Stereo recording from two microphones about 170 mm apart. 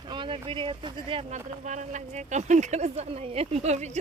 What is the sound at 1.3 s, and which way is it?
Speech, 45° right (ahead or behind).